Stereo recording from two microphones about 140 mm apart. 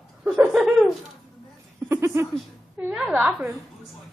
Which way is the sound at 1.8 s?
20° right (ahead or behind).